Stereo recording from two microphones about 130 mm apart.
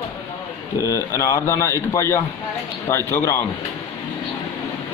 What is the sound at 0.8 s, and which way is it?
A man's voice, 25° left (ahead or behind).